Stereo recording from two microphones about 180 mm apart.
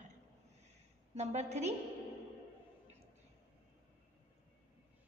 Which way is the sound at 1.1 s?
40° right (ahead or behind).